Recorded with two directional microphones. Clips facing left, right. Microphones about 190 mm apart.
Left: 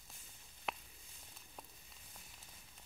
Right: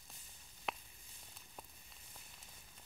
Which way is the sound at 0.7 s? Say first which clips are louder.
Even; centre (ahead or behind).